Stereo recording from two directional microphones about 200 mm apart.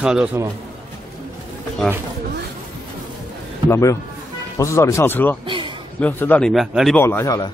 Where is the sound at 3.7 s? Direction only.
15° left (ahead or behind); by 7.0 s centre (ahead or behind).